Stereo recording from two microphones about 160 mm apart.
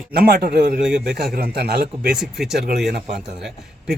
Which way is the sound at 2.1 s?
Centre (ahead or behind).